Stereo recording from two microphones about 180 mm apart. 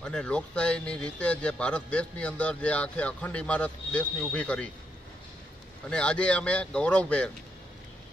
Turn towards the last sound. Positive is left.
turn(degrees=5)  # may be behind; listen again after turning